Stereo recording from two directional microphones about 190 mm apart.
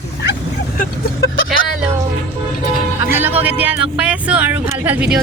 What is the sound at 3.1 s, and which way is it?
Speech, 10° right (ahead or behind).